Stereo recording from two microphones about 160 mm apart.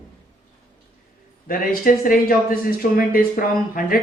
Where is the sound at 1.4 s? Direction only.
60° left (ahead or behind).